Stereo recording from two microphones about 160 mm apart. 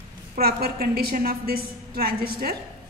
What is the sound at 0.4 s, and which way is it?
A woman's voice, 75° right (ahead or behind).